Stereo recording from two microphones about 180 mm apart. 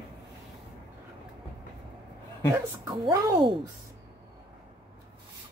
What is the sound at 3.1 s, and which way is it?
Speech, 25° right (ahead or behind).